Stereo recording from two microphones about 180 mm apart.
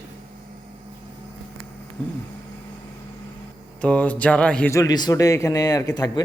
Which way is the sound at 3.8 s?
5° left (ahead or behind).